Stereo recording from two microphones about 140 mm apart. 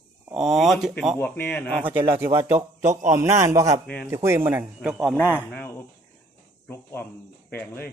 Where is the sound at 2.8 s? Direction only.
60° right (ahead or behind).